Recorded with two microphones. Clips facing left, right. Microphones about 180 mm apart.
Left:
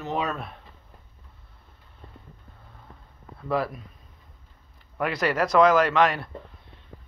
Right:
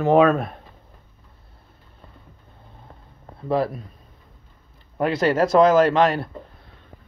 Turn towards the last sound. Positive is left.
turn(degrees=-30)  # may be behind; listen again after turning